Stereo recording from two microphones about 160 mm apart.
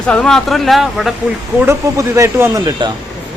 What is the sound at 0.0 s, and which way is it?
Speech, 5° left (ahead or behind).